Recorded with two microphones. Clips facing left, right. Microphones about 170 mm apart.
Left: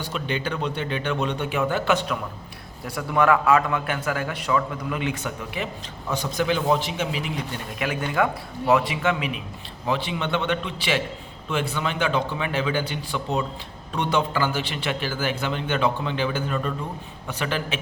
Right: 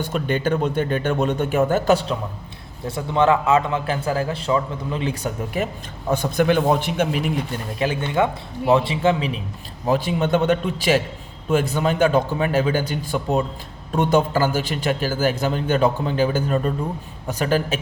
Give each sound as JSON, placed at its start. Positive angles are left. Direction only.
{"t": 0.0, "sound": "a man's voice", "side_deg": -50}
{"t": 6.1, "sound": "speech", "side_deg": -55}
{"t": 7.8, "sound": "a man's voice", "side_deg": -30}
{"t": 9.8, "sound": "a man's voice", "side_deg": -45}